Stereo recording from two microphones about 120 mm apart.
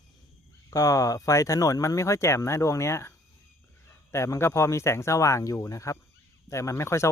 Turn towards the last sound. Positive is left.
turn(degrees=25)  # may be behind; listen again after turning